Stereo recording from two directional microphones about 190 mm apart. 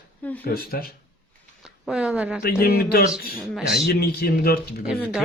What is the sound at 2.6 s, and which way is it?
Speech, 50° left (ahead or behind).